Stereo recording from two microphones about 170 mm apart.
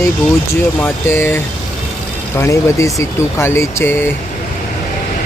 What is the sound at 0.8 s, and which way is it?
Speech, 15° left (ahead or behind).